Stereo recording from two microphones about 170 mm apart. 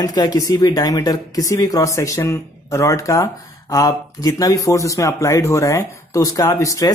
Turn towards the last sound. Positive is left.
turn(degrees=20)  # may be behind; listen again after turning